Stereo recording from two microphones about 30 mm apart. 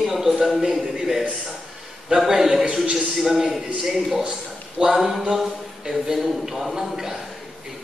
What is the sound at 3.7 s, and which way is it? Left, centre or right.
A man's voice, centre.